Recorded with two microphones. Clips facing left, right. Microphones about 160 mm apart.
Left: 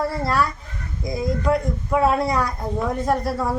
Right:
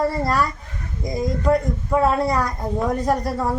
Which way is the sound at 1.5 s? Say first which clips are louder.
Right 3 dB; 10° left (ahead or behind).